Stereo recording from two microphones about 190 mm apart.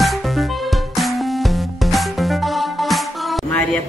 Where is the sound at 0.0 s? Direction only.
Centre (ahead or behind).